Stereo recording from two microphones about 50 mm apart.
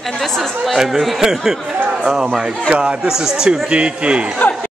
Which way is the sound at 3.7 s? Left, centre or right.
Right.